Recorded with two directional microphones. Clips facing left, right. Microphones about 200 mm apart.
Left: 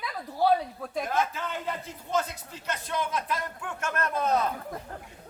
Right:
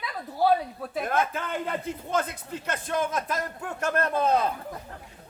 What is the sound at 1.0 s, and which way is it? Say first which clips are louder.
A man's voice: right 3 dB; 55° right (ahead or behind).